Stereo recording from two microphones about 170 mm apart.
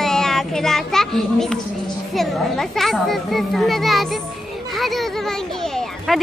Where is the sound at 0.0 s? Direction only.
5° left (ahead or behind).